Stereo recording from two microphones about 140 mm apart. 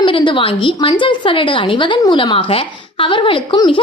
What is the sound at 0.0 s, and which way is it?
A woman's voice, 35° left (ahead or behind).